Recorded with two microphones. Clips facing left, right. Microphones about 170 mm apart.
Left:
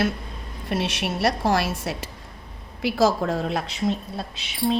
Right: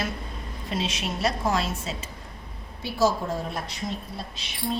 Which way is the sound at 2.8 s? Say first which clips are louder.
Left 4 dB; 85° left.